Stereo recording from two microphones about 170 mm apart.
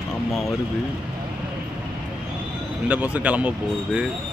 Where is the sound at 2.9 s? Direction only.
10° right (ahead or behind).